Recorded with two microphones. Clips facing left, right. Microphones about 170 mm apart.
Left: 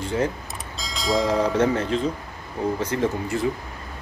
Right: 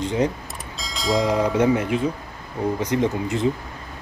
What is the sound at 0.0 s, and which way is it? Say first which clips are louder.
Speech: right 2 dB; 15° right (ahead or behind).